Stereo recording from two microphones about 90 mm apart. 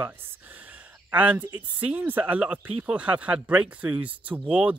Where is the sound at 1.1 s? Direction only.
15° right (ahead or behind).